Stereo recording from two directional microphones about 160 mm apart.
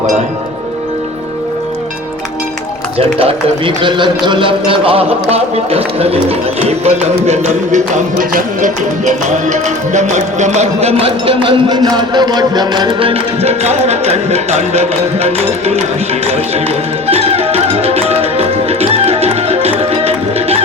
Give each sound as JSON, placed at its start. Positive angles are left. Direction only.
{"t": 3.8, "sound": "speech", "side_deg": -30}
{"t": 8.2, "sound": "music", "side_deg": -60}
{"t": 17.1, "sound": "music", "side_deg": -40}